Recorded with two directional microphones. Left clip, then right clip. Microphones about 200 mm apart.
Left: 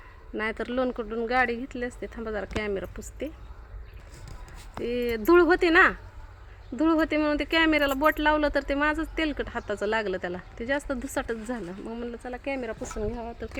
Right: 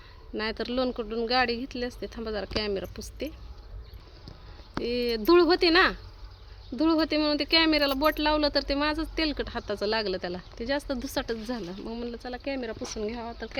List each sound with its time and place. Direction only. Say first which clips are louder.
0.3 s speech: left 1 dB; 20° right (ahead or behind)
4.8 s speech: even; 5° right (ahead or behind)
8.8 s speech: left 2 dB; 15° right (ahead or behind)
9.8 s speech: left 1 dB; 5° right (ahead or behind)
10.6 s speech: left 1 dB; 15° right (ahead or behind)
11.4 s speech: even; centre (ahead or behind)